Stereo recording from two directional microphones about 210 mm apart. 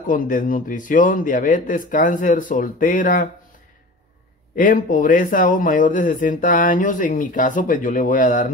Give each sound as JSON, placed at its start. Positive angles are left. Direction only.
{"t": 0.0, "sound": "speech", "side_deg": 40}
{"t": 4.6, "sound": "speech", "side_deg": 40}